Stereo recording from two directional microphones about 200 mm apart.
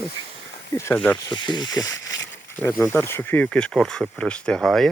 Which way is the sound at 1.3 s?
20° left (ahead or behind).